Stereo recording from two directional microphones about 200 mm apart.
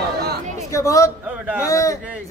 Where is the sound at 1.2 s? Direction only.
5° right (ahead or behind).